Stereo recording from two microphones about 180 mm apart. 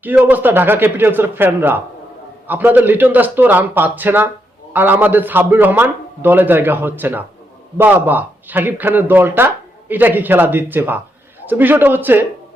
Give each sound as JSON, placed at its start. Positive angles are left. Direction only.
{"t": 0.0, "sound": "a man's voice", "side_deg": -10}